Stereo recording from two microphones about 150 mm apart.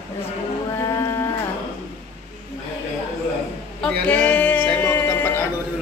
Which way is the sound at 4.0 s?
10° left (ahead or behind).